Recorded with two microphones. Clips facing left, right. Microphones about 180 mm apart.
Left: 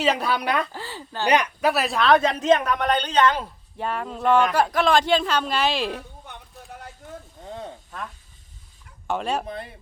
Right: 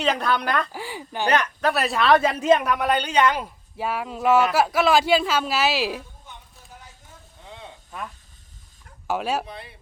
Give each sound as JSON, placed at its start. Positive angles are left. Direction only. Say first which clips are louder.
{"t": 0.0, "sound": "speech", "louder": "even", "side_deg": 5}
{"t": 0.7, "sound": "speech", "louder": "right 2 dB", "side_deg": -15}
{"t": 1.3, "sound": "speech", "louder": "left 2 dB", "side_deg": 15}
{"t": 1.7, "sound": "speech", "louder": "right 1 dB", "side_deg": 0}
{"t": 6.0, "sound": "a sound", "louder": "left 3 dB", "side_deg": 60}
{"t": 7.4, "sound": "sizzle", "louder": "left 6 dB", "side_deg": 45}
{"t": 9.0, "sound": "speech", "louder": "right 1 dB", "side_deg": -5}
{"t": 9.5, "sound": "speech", "louder": "left 5 dB", "side_deg": 45}